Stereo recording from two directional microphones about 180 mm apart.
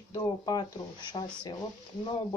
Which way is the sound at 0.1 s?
20° left (ahead or behind).